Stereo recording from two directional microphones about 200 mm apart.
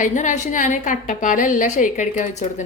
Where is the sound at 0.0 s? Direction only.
40° left (ahead or behind).